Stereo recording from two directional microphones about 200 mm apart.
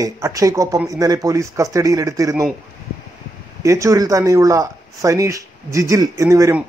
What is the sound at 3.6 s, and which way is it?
Speech, 15° right (ahead or behind).